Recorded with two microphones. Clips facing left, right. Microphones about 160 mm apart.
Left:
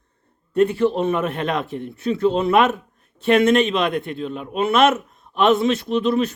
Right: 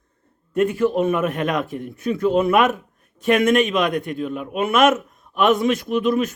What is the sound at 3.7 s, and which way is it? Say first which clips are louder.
Speech: even; 30° left (ahead or behind).